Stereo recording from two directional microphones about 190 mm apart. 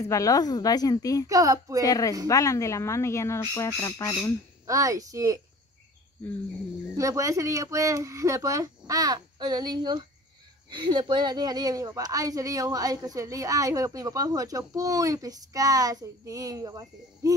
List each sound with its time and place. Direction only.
0.0 s speech: 15° left (ahead or behind)
1.2 s speech: 20° right (ahead or behind)
1.8 s speech: 20° left (ahead or behind)
4.6 s speech: 15° right (ahead or behind)
7.0 s a woman's voice: 15° right (ahead or behind)